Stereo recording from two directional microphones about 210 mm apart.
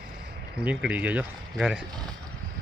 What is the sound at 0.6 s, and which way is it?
Speech, 5° right (ahead or behind).